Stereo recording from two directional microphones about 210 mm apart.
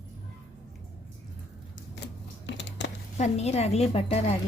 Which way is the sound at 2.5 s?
60° left (ahead or behind).